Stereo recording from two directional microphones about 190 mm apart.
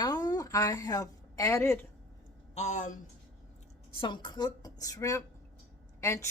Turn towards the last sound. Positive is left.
turn(degrees=15)  # may be behind; listen again after turning